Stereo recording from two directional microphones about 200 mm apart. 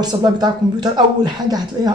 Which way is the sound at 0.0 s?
20° right (ahead or behind).